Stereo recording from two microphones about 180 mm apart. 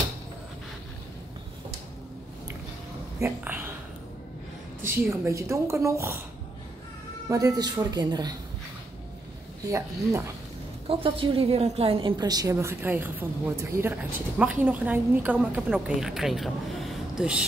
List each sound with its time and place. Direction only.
3.2 s speech: 10° right (ahead or behind)
4.8 s a woman's voice: 15° right (ahead or behind)
7.2 s a woman's voice: 20° right (ahead or behind)
9.7 s a woman's voice: 15° right (ahead or behind)
10.9 s a woman's voice: 30° right (ahead or behind); by 17.5 s 5° right (ahead or behind)